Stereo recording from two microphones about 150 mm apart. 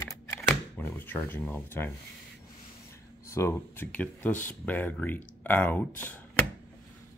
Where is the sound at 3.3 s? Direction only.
15° left (ahead or behind).